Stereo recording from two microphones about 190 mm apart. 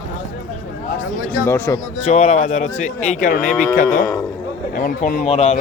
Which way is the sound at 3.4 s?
5° left (ahead or behind).